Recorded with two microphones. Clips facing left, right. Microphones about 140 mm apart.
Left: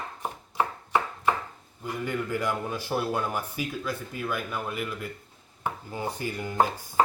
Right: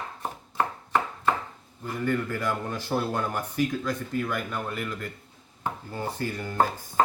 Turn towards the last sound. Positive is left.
turn(degrees=10)  # may be behind; listen again after turning